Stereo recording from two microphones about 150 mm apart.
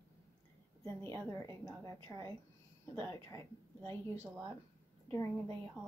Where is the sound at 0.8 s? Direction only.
15° left (ahead or behind).